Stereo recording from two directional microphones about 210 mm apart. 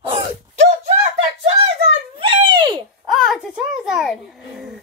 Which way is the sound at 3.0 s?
Centre (ahead or behind).